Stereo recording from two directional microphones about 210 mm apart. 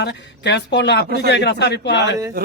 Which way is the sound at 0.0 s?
55° left (ahead or behind).